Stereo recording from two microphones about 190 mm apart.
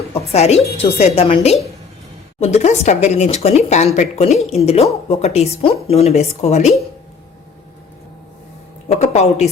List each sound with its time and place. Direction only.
0.3 s speech: 35° left (ahead or behind)
8.9 s speech: 35° left (ahead or behind)